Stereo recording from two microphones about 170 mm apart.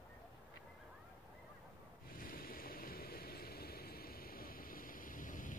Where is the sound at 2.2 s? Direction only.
55° left (ahead or behind).